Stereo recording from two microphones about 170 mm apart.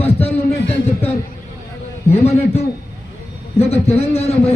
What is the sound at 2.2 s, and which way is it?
Speech, 35° left (ahead or behind).